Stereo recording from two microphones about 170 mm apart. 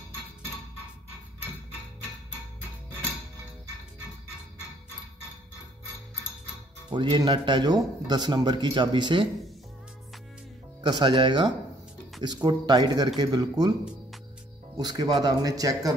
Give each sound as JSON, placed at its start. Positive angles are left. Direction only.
{"t": 6.9, "sound": "a man's voice", "side_deg": -25}
{"t": 10.8, "sound": "a man's voice", "side_deg": -25}
{"t": 14.8, "sound": "a man's voice", "side_deg": -25}